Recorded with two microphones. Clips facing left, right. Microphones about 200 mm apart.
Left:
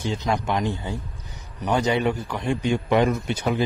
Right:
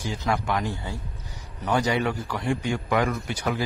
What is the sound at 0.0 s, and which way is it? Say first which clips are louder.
Speech: left 2 dB; 25° left (ahead or behind).